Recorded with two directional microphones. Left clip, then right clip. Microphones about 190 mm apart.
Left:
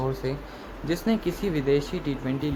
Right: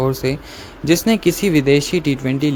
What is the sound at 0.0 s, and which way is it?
Speech, 55° right (ahead or behind).